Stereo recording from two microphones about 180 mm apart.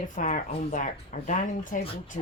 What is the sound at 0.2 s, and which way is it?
Speech, 40° left (ahead or behind).